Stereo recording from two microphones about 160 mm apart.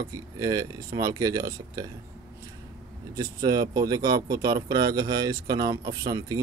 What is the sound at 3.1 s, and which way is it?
Speech, 25° right (ahead or behind).